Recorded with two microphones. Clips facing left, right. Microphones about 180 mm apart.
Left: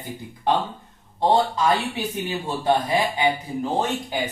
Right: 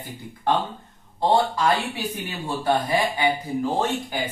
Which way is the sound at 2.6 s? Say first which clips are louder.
Left 1 dB; 20° left (ahead or behind).